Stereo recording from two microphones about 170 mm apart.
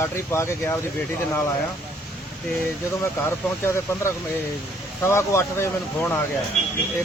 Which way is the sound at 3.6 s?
15° left (ahead or behind).